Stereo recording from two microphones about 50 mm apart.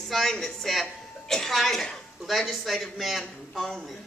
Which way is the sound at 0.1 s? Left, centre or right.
Centre.